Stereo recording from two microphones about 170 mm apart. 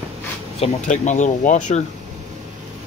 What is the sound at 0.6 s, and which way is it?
Speech, 45° left (ahead or behind).